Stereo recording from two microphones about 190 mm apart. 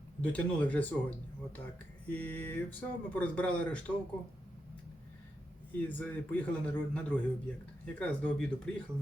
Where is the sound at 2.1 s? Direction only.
10° left (ahead or behind).